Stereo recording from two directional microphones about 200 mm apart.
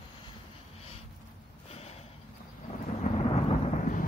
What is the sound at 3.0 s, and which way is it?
Thunder, 40° left (ahead or behind).